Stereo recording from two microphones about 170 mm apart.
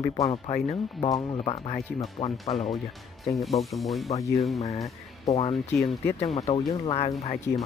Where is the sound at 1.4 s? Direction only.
35° left (ahead or behind).